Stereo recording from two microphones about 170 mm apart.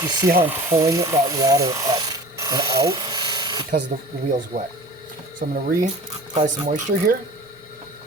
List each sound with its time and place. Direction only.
0.0 s speech: 20° right (ahead or behind)
3.7 s speech: 50° right (ahead or behind)